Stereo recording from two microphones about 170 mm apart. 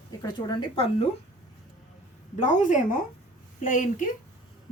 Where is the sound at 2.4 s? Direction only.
45° left (ahead or behind).